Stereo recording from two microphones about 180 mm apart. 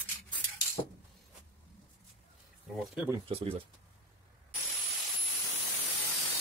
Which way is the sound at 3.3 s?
35° right (ahead or behind).